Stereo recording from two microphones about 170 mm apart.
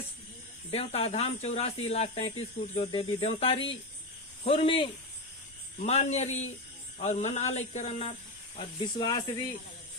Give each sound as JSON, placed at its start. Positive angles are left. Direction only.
{"t": 0.7, "sound": "speech", "side_deg": 35}
{"t": 9.0, "sound": "speech", "side_deg": 25}